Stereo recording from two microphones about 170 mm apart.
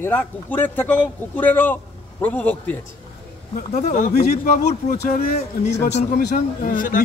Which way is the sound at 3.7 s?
45° left (ahead or behind).